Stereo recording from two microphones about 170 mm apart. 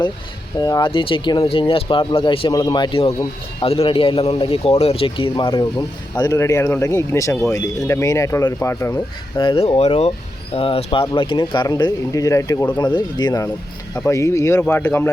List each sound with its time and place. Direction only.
0.6 s a man's voice: 25° left (ahead or behind)
9.4 s a man's voice: 35° left (ahead or behind); by 15.1 s 10° left (ahead or behind)